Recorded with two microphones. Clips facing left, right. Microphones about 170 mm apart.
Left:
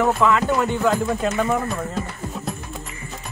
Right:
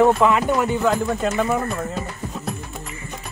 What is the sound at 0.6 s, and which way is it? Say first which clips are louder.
Speech: even; 5° right (ahead or behind).